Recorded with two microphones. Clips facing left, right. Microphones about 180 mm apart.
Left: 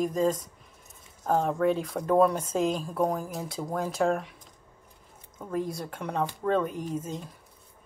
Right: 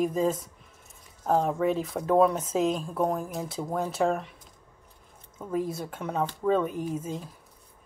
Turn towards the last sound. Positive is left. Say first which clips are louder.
# right 1 dB
turn(degrees=-5)  # may be behind; listen again after turning